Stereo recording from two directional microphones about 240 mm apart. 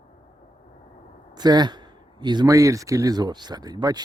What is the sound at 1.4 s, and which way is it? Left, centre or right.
Speech, centre.